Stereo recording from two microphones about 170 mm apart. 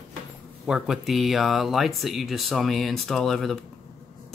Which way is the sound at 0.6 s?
5° right (ahead or behind).